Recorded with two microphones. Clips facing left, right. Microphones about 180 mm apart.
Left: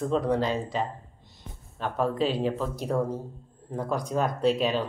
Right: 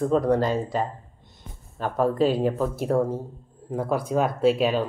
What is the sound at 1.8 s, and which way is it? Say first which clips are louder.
Speech: right 5 dB; 45° right (ahead or behind).